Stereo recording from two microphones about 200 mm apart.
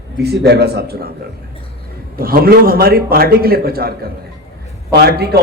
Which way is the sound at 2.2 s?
45° right (ahead or behind).